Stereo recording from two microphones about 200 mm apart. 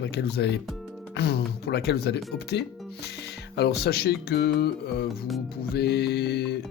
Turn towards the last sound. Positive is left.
turn(degrees=55)  # may be behind; listen again after turning